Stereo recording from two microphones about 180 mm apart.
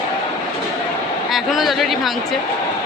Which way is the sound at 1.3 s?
Centre (ahead or behind).